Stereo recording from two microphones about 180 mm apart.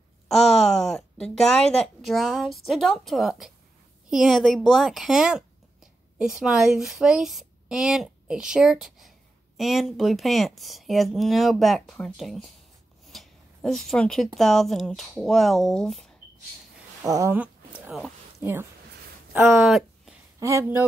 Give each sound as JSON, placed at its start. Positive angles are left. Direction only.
{"t": 0.3, "sound": "a woman's voice", "side_deg": 0}
{"t": 17.0, "sound": "a sound", "side_deg": -15}
{"t": 18.4, "sound": "speech", "side_deg": -10}
{"t": 20.3, "sound": "speech", "side_deg": -15}